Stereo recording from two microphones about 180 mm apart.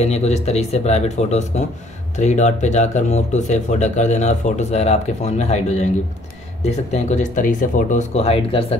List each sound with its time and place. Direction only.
0.0 s speech: 35° left (ahead or behind)